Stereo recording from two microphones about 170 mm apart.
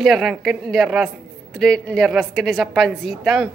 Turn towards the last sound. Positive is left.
turn(degrees=0)  # may be behind; listen again after turning